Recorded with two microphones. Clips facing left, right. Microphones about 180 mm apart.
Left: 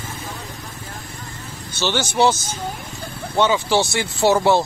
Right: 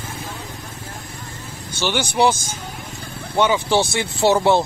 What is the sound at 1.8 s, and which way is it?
Speech, 10° right (ahead or behind).